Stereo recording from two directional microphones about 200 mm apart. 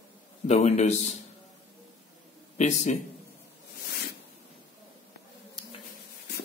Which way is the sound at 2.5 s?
35° left (ahead or behind).